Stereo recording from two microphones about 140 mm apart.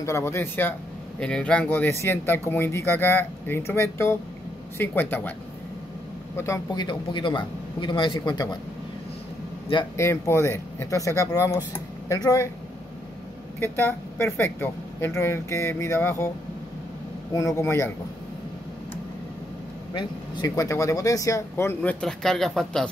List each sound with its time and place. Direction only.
0.0 s speech: 20° left (ahead or behind)
6.3 s a man's voice: 20° left (ahead or behind)
9.9 s speech: 20° left (ahead or behind)
13.6 s speech: 15° left (ahead or behind)
17.3 s speech: 20° left (ahead or behind)
19.9 s speech: 35° left (ahead or behind); by 21.9 s 15° left (ahead or behind)
22.0 s speech: 5° left (ahead or behind)